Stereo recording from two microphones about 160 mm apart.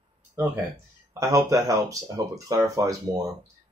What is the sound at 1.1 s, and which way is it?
Speech, 20° right (ahead or behind).